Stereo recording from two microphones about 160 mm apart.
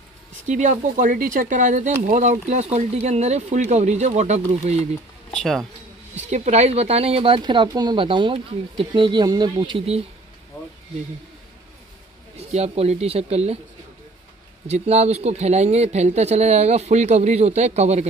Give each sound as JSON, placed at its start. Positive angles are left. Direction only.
{"t": 0.5, "sound": "speech", "side_deg": -50}
{"t": 5.3, "sound": "speech", "side_deg": 0}
{"t": 6.2, "sound": "speech", "side_deg": -45}
{"t": 9.8, "sound": "speech", "side_deg": -40}
{"t": 12.4, "sound": "speech", "side_deg": -40}
{"t": 14.7, "sound": "speech", "side_deg": -40}